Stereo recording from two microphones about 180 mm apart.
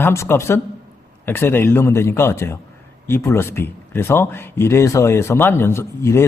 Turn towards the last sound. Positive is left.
turn(degrees=15)  # may be behind; listen again after turning